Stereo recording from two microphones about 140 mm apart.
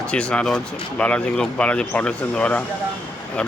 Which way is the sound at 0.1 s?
5° left (ahead or behind).